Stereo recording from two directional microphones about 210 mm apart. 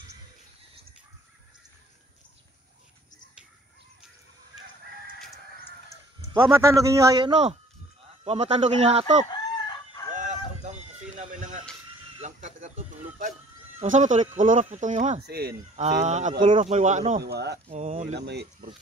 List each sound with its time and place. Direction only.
6.3 s a man's voice: 10° right (ahead or behind)
8.2 s speech: 30° right (ahead or behind)
10.1 s a sound: 35° right (ahead or behind)
13.7 s speech: 35° right (ahead or behind)
15.2 s speech: 50° right (ahead or behind)
15.7 s speech: 30° right (ahead or behind)
17.2 s speech: 50° right (ahead or behind)
17.6 s speech: 35° right (ahead or behind)
18.2 s speech: 50° right (ahead or behind)